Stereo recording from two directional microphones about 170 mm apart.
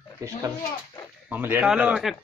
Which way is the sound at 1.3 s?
10° right (ahead or behind).